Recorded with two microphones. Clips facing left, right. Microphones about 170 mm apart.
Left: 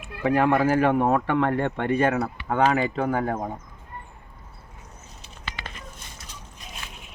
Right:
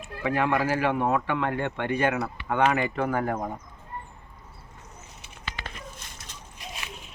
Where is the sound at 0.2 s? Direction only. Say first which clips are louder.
Left 5 dB; 40° left (ahead or behind); by 3.5 s 20° left (ahead or behind).